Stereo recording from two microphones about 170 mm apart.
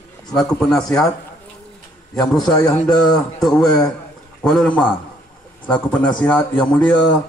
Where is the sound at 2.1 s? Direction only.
5° left (ahead or behind).